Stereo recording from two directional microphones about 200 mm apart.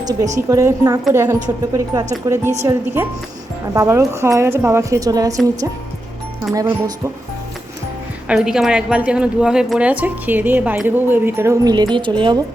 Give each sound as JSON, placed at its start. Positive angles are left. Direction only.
{"t": 0.0, "sound": "a woman's voice", "side_deg": -20}
{"t": 6.5, "sound": "speech", "side_deg": -15}
{"t": 8.3, "sound": "speech", "side_deg": -5}